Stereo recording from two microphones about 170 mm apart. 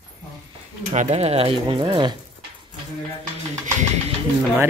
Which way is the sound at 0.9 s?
40° right (ahead or behind).